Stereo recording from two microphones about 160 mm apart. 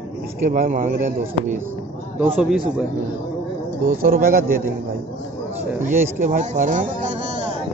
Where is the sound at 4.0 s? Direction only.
65° right (ahead or behind).